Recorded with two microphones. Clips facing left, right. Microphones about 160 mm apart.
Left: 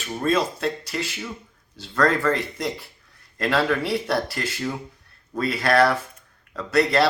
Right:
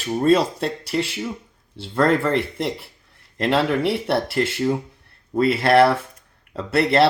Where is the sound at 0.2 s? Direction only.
30° right (ahead or behind).